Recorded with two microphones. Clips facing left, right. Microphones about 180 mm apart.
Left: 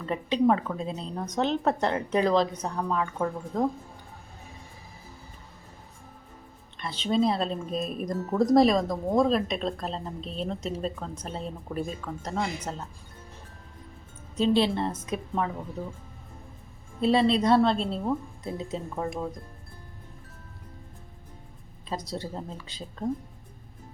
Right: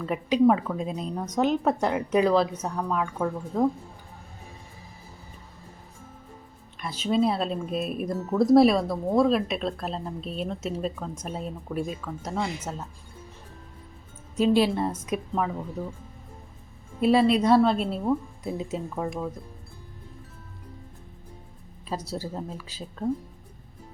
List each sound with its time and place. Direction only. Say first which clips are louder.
0.0 s speech: right 3 dB; 10° right (ahead or behind)
6.7 s speech: right 1 dB; 10° right (ahead or behind)
14.3 s speech: right 2 dB; 10° right (ahead or behind)
17.0 s speech: right 2 dB; 10° right (ahead or behind)
21.8 s speech: right 1 dB; 10° right (ahead or behind)